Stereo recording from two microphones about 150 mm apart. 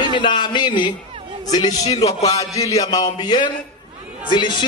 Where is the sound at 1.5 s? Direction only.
25° left (ahead or behind).